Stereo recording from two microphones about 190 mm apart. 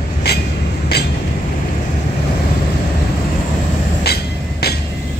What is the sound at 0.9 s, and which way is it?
Train, 55° left (ahead or behind).